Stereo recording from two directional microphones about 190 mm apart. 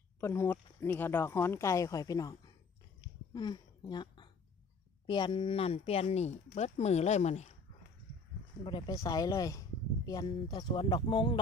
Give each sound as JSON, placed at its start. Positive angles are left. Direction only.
{"t": 0.2, "sound": "speech", "side_deg": 10}
{"t": 3.0, "sound": "a sound", "side_deg": 20}
{"t": 5.0, "sound": "speech", "side_deg": 25}
{"t": 8.6, "sound": "speech", "side_deg": 25}